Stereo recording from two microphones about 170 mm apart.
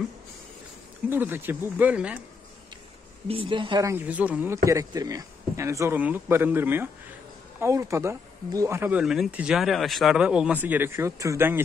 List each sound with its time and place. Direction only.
1.1 s speech: 10° right (ahead or behind)
3.3 s speech: 30° right (ahead or behind)
3.9 s speech: 10° right (ahead or behind)
9.0 s speech: 5° right (ahead or behind)